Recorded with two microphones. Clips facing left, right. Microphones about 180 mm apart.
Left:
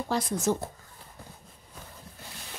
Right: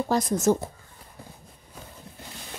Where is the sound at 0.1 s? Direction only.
45° right (ahead or behind).